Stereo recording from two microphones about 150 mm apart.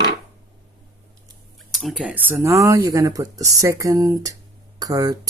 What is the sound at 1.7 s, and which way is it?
Speech, centre (ahead or behind).